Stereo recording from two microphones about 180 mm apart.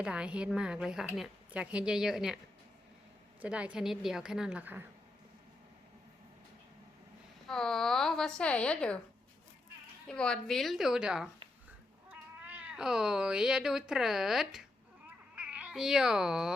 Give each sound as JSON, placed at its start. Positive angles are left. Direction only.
{"t": 0.0, "sound": "a woman's voice", "side_deg": -5}
{"t": 3.4, "sound": "a woman's voice", "side_deg": -5}
{"t": 7.4, "sound": "a woman's voice", "side_deg": 5}
{"t": 10.1, "sound": "a woman's voice", "side_deg": 5}